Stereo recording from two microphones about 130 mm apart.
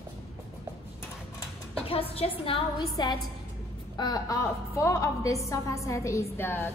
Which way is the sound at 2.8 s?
35° left (ahead or behind).